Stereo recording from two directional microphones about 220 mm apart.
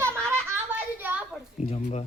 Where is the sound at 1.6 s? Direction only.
30° left (ahead or behind).